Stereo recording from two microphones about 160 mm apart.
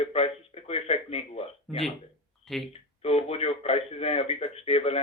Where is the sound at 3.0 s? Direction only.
40° left (ahead or behind).